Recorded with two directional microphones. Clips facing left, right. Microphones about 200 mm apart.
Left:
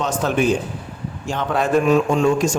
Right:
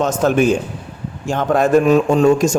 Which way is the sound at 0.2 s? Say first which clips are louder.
Right 3 dB; 45° right (ahead or behind).